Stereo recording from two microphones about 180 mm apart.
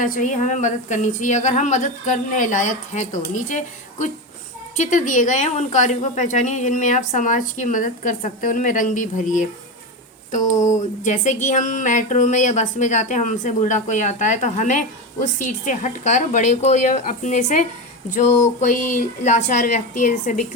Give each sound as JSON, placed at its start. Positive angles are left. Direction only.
{"t": 0.0, "sound": "a woman's voice", "side_deg": 45}
{"t": 10.8, "sound": "a woman's voice", "side_deg": 45}